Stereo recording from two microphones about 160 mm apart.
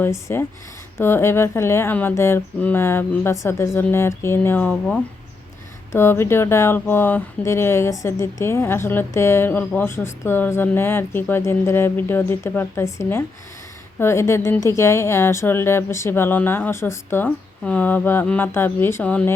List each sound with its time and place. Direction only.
0.0 s speech: 15° left (ahead or behind)